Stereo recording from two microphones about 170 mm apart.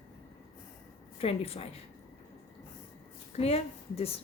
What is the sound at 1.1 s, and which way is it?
Speech, 35° left (ahead or behind).